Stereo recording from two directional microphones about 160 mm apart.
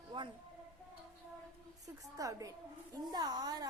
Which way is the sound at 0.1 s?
30° right (ahead or behind).